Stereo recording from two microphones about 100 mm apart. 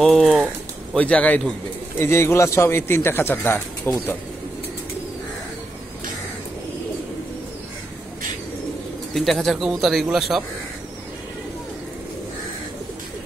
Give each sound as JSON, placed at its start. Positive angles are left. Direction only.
{"t": 0.0, "sound": "speech", "side_deg": 0}
{"t": 0.9, "sound": "a man's voice", "side_deg": 10}
{"t": 2.0, "sound": "speech", "side_deg": 25}
{"t": 9.1, "sound": "speech", "side_deg": 0}